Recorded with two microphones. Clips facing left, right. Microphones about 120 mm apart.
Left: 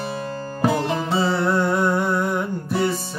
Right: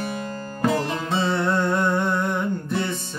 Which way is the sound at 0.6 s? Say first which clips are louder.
Left 2 dB; 25° left (ahead or behind).